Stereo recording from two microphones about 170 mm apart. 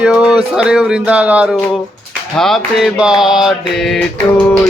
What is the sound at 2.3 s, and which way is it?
Music, centre (ahead or behind).